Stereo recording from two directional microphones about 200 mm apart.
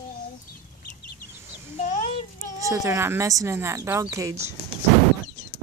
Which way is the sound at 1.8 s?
35° left (ahead or behind).